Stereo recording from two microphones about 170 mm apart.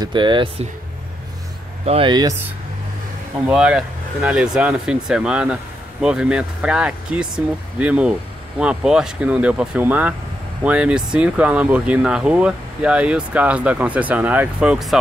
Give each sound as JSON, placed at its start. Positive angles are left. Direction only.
{"t": 0.0, "sound": "speech", "side_deg": -25}
{"t": 1.9, "sound": "speech", "side_deg": -30}
{"t": 3.4, "sound": "speech", "side_deg": -5}